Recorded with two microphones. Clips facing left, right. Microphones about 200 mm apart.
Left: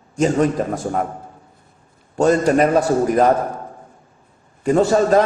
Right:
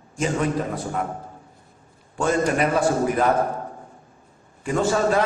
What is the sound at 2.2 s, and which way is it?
A man's voice, 40° left (ahead or behind).